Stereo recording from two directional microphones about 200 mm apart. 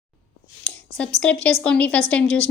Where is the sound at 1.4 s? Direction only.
5° left (ahead or behind).